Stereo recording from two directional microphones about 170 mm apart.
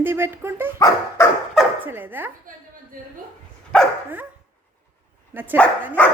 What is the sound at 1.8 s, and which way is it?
Speech, 10° right (ahead or behind).